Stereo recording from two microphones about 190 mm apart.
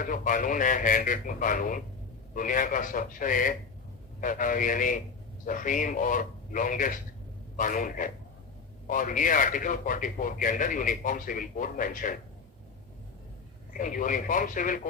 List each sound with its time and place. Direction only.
0.0 s speech: 45° left (ahead or behind)
13.7 s speech: 45° left (ahead or behind)